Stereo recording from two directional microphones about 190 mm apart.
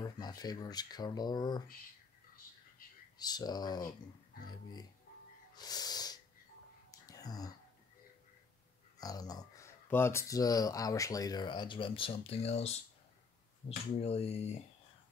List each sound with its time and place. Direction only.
0.0 s speech: 20° left (ahead or behind)
3.2 s speech: 20° left (ahead or behind)
5.5 s wheeze: 20° left (ahead or behind)
6.9 s whispering: 20° left (ahead or behind)
9.0 s speech: 20° left (ahead or behind)